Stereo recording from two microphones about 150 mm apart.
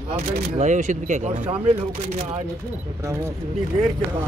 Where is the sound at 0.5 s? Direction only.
55° right (ahead or behind).